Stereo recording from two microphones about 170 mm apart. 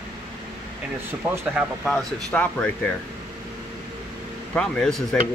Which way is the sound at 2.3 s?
10° left (ahead or behind).